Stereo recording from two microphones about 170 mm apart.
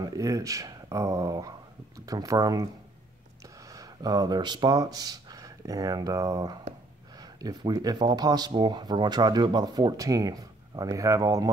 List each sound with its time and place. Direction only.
0.0 s speech: 20° right (ahead or behind)